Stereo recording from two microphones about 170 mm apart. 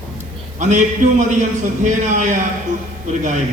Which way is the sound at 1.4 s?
45° right (ahead or behind).